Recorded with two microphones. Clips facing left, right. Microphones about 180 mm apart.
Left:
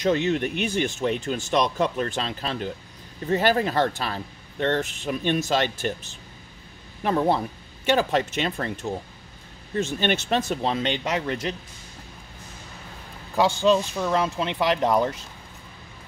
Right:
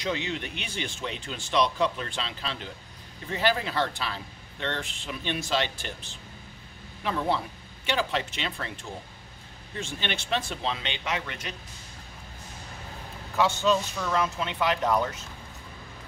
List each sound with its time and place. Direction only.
0.0 s speech: 45° left (ahead or behind)
7.0 s speech: 45° left (ahead or behind)
9.8 s speech: 45° left (ahead or behind)
13.4 s speech: 30° left (ahead or behind)